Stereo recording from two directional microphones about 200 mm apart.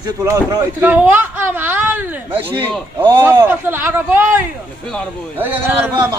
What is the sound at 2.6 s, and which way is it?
Speech, 5° left (ahead or behind).